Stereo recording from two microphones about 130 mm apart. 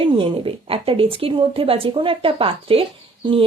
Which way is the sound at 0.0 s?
45° right (ahead or behind).